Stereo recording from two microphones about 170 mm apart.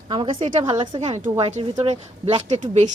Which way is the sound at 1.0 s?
40° right (ahead or behind).